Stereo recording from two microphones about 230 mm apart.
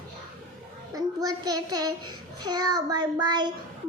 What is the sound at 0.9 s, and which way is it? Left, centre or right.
A child's voice, centre.